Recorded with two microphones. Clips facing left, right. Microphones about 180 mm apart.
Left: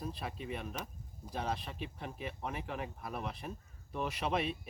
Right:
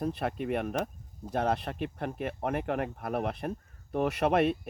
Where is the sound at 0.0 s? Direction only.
65° right (ahead or behind).